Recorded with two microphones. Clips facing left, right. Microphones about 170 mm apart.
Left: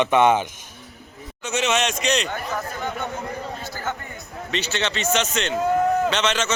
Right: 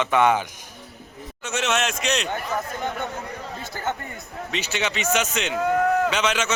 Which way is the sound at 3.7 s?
25° right (ahead or behind).